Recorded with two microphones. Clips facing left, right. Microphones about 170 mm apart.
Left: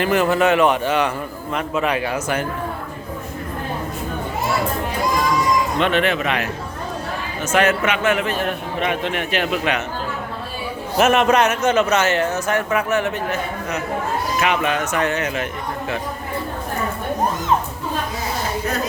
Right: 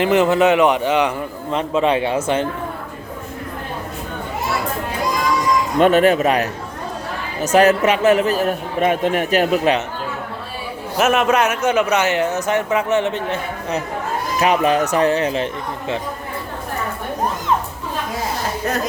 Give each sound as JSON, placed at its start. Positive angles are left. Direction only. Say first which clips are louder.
{"t": 0.0, "sound": "a man's voice", "louder": "right 3 dB", "side_deg": -20}
{"t": 1.5, "sound": "speech", "louder": "right 4 dB", "side_deg": -25}
{"t": 5.8, "sound": "a man's voice", "louder": "right 11 dB", "side_deg": -40}
{"t": 10.9, "sound": "a man's voice", "louder": "left 1 dB", "side_deg": -5}